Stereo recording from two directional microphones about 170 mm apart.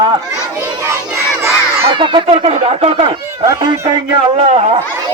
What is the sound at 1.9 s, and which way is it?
Speech, 30° right (ahead or behind).